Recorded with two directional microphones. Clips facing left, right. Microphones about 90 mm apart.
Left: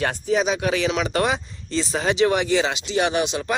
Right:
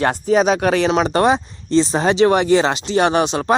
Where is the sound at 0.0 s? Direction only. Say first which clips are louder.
Right 6 dB; 40° right (ahead or behind).